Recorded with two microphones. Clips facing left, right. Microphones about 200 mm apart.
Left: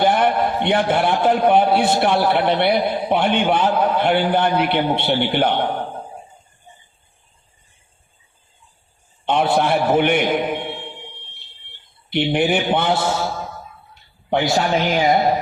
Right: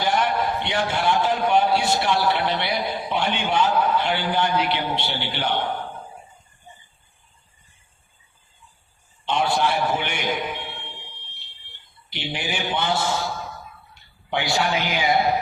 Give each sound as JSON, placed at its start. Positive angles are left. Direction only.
{"t": 0.0, "sound": "a man's voice", "side_deg": 55}
{"t": 9.2, "sound": "a sound", "side_deg": 55}
{"t": 12.1, "sound": "a man's voice", "side_deg": 55}
{"t": 14.3, "sound": "a man's voice", "side_deg": 45}